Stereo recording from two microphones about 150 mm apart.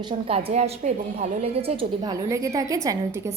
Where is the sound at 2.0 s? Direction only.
25° right (ahead or behind).